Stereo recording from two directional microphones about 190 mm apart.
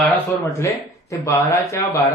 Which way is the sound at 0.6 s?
15° left (ahead or behind).